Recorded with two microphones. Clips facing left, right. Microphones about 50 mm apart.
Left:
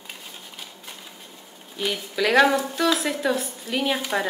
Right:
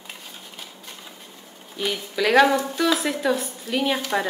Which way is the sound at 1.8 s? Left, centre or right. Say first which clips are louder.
Even; centre.